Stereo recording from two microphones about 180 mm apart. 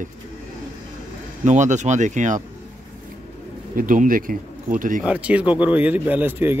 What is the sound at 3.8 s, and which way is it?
Speech, 50° right (ahead or behind).